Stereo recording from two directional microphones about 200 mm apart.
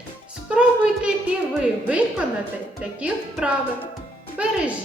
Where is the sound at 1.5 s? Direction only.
5° right (ahead or behind).